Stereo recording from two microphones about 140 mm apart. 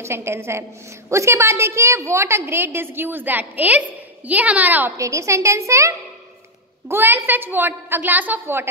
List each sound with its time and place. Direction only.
0.0 s a woman's voice: 20° right (ahead or behind)